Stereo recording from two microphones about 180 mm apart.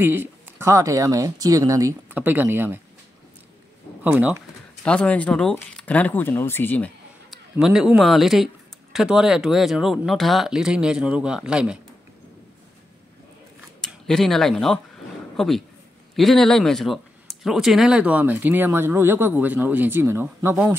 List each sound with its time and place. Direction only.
0.0 s speech: 10° right (ahead or behind)
4.0 s speech: 10° right (ahead or behind)
4.8 s speech: 5° left (ahead or behind)
7.2 s a man's voice: centre (ahead or behind)
13.7 s speech: 5° left (ahead or behind)